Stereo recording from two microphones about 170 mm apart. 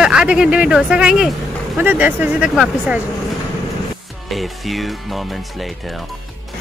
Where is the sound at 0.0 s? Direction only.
5° right (ahead or behind).